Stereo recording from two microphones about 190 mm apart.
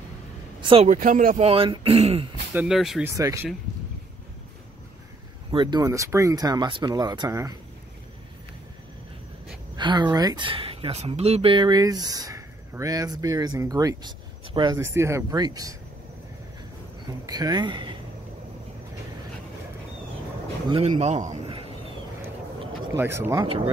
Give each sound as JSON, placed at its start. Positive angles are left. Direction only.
{"t": 0.6, "sound": "speech", "side_deg": -25}
{"t": 0.8, "sound": "speech", "side_deg": -45}
{"t": 1.5, "sound": "speech", "side_deg": -30}
{"t": 2.5, "sound": "speech", "side_deg": -5}
{"t": 3.2, "sound": "speech", "side_deg": -15}
{"t": 5.5, "sound": "speech", "side_deg": -25}
{"t": 9.8, "sound": "speech", "side_deg": -25}
{"t": 17.3, "sound": "speech", "side_deg": -20}
{"t": 20.7, "sound": "a man's voice", "side_deg": -35}
{"t": 22.9, "sound": "speech", "side_deg": -10}
{"t": 23.4, "sound": "speech", "side_deg": -30}